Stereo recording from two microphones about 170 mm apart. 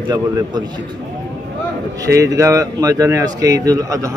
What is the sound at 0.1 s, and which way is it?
Speech, 25° right (ahead or behind).